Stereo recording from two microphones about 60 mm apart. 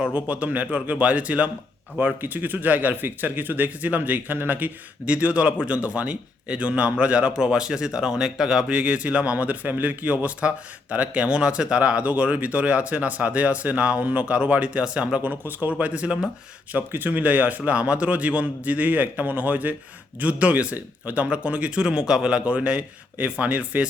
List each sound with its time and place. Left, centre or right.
0.0 s speech: right
16.7 s speech: right